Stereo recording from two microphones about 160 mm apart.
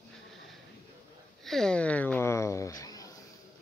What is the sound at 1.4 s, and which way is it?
Speech, 5° left (ahead or behind).